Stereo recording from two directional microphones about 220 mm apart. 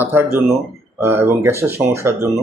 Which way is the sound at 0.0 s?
10° right (ahead or behind).